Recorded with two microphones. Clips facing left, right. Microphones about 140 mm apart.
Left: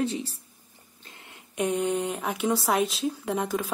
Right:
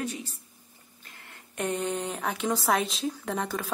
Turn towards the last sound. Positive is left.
turn(degrees=5)  # may be behind; listen again after turning